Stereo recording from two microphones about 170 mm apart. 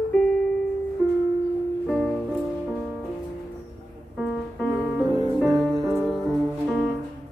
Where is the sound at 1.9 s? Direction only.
5° left (ahead or behind).